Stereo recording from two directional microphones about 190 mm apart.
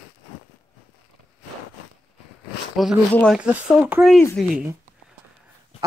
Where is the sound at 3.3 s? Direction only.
5° right (ahead or behind).